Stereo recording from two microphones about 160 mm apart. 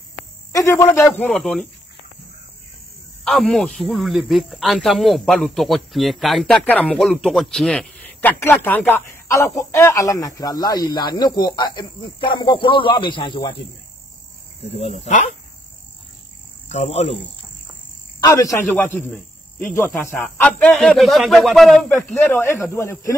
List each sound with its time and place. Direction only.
0.5 s speech: 15° left (ahead or behind)
3.3 s speech: centre (ahead or behind); by 13.6 s 30° left (ahead or behind)
14.7 s speech: 40° left (ahead or behind)
16.6 s speech: 45° left (ahead or behind)
18.2 s speech: 20° left (ahead or behind)